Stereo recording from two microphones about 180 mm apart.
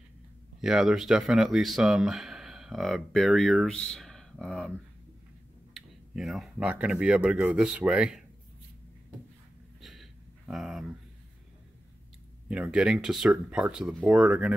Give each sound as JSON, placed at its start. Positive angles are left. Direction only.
{"t": 0.6, "sound": "speech", "side_deg": 0}
{"t": 5.8, "sound": "speech", "side_deg": 0}
{"t": 9.8, "sound": "a sound", "side_deg": 0}
{"t": 10.5, "sound": "speech", "side_deg": 0}
{"t": 12.4, "sound": "speech", "side_deg": -5}